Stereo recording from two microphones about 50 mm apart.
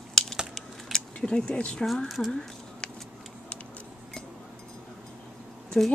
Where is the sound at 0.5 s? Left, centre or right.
Centre.